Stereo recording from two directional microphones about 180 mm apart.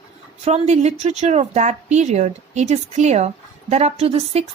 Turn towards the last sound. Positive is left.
turn(degrees=-35)  # may be behind; listen again after turning